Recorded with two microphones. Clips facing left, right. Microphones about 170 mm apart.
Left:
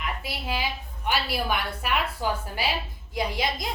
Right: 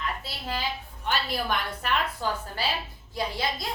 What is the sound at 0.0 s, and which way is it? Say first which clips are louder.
A woman's voice: left 1 dB; 15° left (ahead or behind).